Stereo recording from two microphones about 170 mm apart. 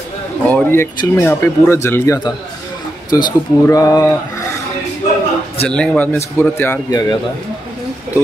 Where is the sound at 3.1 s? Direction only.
25° left (ahead or behind).